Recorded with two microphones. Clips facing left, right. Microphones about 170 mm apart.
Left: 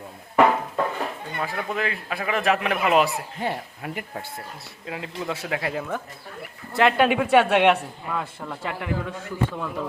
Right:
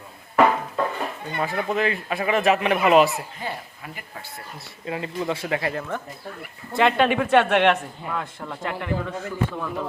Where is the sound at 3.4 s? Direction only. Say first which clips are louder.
Left 4 dB; 65° left (ahead or behind).